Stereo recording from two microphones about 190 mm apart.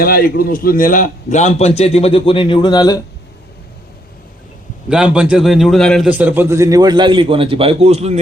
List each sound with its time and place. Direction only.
0.0 s a man's voice: 50° left (ahead or behind); by 3.0 s 20° left (ahead or behind)
4.9 s a man's voice: 5° right (ahead or behind)
6.1 s a man's voice: 10° right (ahead or behind); by 8.2 s 35° right (ahead or behind)